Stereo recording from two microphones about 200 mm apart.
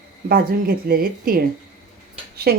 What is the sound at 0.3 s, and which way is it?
Speech, 50° right (ahead or behind).